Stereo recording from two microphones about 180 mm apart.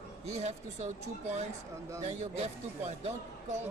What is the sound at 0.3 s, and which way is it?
Speech, 40° right (ahead or behind).